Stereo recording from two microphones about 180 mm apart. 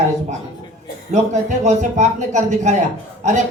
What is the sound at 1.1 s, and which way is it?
Speech, 40° right (ahead or behind).